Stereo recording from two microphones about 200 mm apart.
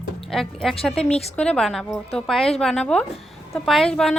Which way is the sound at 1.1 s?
30° left (ahead or behind).